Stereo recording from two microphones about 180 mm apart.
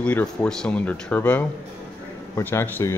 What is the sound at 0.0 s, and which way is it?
Speech, 5° left (ahead or behind).